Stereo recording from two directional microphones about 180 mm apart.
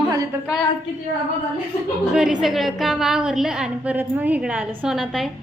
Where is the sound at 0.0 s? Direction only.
20° right (ahead or behind).